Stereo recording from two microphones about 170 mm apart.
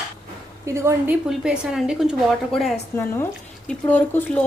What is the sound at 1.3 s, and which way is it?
A woman's voice, 5° right (ahead or behind).